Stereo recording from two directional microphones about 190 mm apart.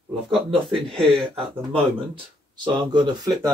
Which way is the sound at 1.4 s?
25° right (ahead or behind).